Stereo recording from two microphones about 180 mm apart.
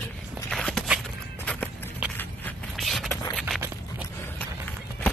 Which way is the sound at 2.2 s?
5° left (ahead or behind).